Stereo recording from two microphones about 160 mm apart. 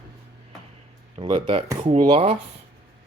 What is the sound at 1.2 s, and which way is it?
Speech, 30° right (ahead or behind).